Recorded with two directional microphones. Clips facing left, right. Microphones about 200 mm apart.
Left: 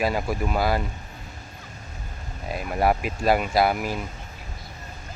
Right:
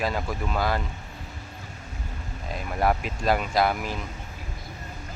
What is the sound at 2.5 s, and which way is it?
Speech, 10° left (ahead or behind).